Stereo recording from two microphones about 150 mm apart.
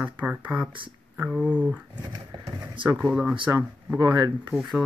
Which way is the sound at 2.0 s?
30° right (ahead or behind).